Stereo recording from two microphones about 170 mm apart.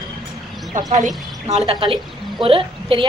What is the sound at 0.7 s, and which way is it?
A woman's voice, 45° right (ahead or behind).